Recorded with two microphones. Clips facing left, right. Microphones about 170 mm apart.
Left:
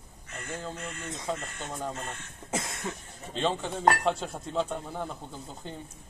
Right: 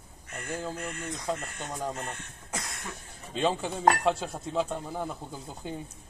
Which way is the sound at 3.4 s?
5° right (ahead or behind).